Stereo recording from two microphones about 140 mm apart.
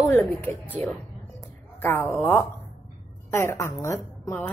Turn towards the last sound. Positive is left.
turn(degrees=20)  # may be behind; listen again after turning